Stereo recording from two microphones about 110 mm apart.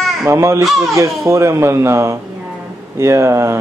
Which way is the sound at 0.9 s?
30° right (ahead or behind).